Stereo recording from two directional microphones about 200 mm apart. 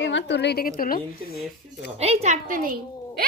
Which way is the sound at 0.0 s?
65° left (ahead or behind).